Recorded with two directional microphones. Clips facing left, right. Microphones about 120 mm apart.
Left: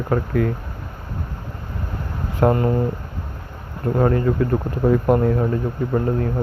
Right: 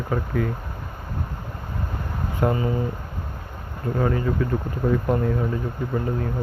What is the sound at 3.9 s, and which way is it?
Speech, 50° left (ahead or behind).